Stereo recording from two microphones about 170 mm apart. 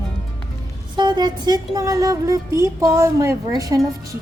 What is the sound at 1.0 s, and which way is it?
A woman's voice, 25° right (ahead or behind).